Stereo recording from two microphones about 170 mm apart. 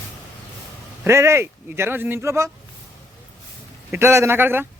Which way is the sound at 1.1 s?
15° right (ahead or behind).